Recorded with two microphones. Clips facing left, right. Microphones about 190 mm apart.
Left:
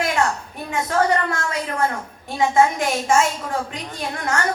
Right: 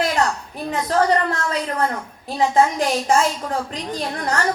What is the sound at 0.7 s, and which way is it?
Speech, 35° right (ahead or behind).